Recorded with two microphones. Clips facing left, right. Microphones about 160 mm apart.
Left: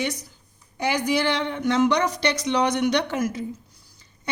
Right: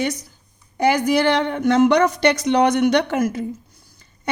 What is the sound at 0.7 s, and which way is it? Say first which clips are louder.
A woman's voice: right 6 dB; 45° right (ahead or behind).